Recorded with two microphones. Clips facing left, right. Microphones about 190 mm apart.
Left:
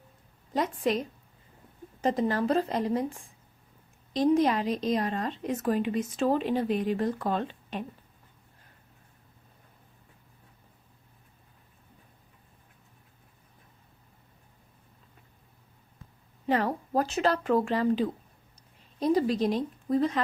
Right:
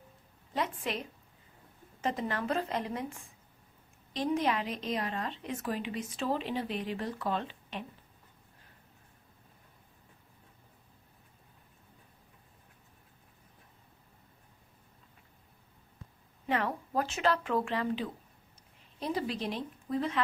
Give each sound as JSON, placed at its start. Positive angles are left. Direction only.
{"t": 0.5, "sound": "a woman's voice", "side_deg": 40}
{"t": 16.4, "sound": "speech", "side_deg": 35}